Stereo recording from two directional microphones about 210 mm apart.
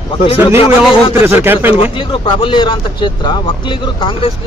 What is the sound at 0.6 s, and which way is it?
Speech, 25° left (ahead or behind).